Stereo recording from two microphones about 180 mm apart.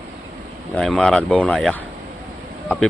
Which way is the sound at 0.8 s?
Centre (ahead or behind).